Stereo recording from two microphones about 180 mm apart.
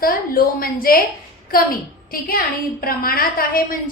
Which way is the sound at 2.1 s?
55° left (ahead or behind).